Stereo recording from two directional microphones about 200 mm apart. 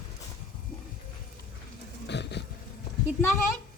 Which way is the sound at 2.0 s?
60° left (ahead or behind).